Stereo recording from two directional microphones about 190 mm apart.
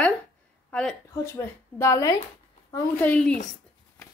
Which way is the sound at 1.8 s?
15° left (ahead or behind).